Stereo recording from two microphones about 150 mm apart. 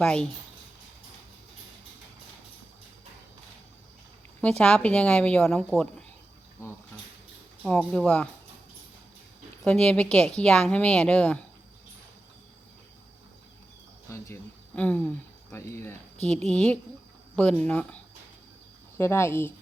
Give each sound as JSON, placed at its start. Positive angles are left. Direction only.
{"t": 0.0, "sound": "speech", "side_deg": 5}
{"t": 4.4, "sound": "a woman's voice", "side_deg": 5}
{"t": 7.6, "sound": "a woman's voice", "side_deg": 5}
{"t": 9.6, "sound": "a woman's voice", "side_deg": 5}
{"t": 14.1, "sound": "cricket", "side_deg": 20}
{"t": 14.8, "sound": "speech", "side_deg": 10}
{"t": 16.2, "sound": "a woman's voice", "side_deg": 5}